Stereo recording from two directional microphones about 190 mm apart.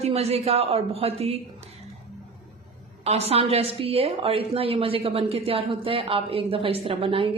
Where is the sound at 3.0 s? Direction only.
35° right (ahead or behind).